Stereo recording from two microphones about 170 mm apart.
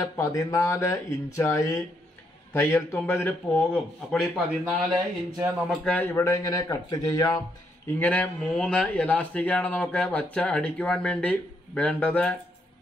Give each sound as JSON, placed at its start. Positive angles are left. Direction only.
{"t": 0.0, "sound": "speech", "side_deg": 20}
{"t": 8.0, "sound": "speech", "side_deg": 10}